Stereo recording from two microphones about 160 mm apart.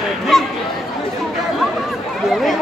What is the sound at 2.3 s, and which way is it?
Chatter, centre (ahead or behind).